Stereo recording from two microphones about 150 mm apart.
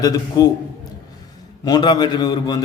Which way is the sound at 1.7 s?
25° left (ahead or behind).